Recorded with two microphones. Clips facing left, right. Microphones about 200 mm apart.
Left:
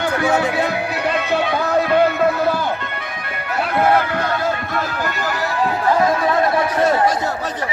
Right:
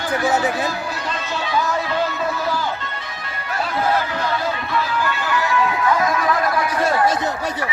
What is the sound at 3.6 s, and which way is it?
Music, 60° left (ahead or behind).